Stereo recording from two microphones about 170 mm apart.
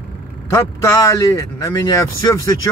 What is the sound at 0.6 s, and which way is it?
Speech, 15° left (ahead or behind).